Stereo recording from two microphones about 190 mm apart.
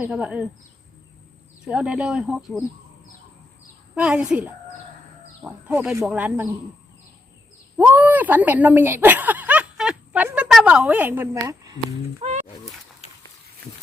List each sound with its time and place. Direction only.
0.0 s a woman's voice: 5° right (ahead or behind)
1.6 s speech: 5° right (ahead or behind)
3.9 s a woman's voice: 5° right (ahead or behind)
7.8 s speech: 10° right (ahead or behind)
12.2 s wild animals: 30° right (ahead or behind)